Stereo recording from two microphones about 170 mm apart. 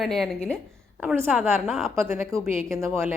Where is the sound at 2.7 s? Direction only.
15° right (ahead or behind).